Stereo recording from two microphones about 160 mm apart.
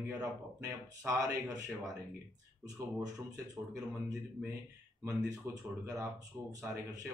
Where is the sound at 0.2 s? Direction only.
20° right (ahead or behind).